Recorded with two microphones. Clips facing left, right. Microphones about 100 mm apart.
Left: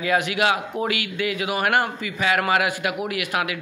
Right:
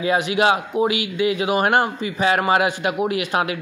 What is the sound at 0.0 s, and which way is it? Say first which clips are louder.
Speech: right 3 dB; 25° right (ahead or behind).